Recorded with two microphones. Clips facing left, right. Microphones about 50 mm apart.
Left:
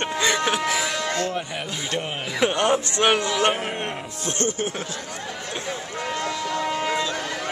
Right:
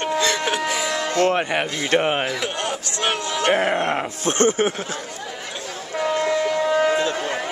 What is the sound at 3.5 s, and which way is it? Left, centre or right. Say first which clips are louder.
Speech: right 6 dB; right.